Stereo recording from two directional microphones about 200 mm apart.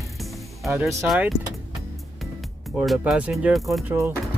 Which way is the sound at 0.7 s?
15° right (ahead or behind).